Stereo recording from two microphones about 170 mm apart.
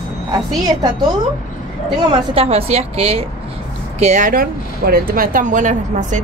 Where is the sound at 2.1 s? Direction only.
35° right (ahead or behind).